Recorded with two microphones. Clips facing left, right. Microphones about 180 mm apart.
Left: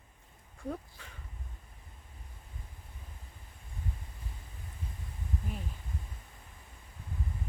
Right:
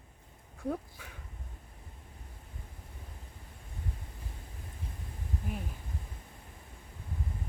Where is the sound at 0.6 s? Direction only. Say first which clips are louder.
Right 4 dB; 10° right (ahead or behind).